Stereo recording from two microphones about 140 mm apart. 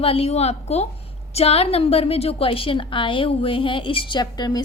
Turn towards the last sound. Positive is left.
turn(degrees=30)  # may be behind; listen again after turning